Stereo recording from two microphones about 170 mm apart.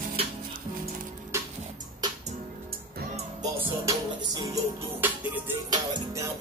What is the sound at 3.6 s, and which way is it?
Music, 20° right (ahead or behind).